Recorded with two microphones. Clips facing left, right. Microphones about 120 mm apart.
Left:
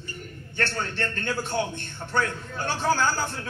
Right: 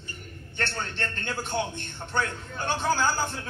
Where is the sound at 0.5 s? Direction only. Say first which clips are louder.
Left 3 dB; 20° right (ahead or behind).